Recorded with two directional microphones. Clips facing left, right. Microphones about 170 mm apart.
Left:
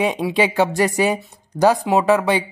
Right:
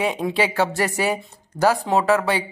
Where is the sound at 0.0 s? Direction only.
15° left (ahead or behind).